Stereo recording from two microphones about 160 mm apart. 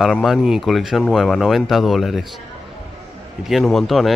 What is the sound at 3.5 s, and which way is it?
Speech, centre (ahead or behind).